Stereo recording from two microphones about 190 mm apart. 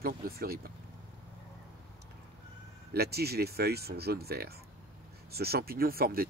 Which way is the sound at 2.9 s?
55° right (ahead or behind).